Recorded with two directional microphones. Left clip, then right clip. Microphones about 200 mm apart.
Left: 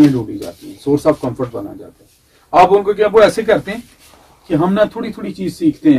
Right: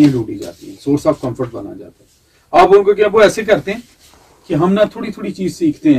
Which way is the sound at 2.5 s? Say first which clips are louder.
Right 1 dB; 25° right (ahead or behind).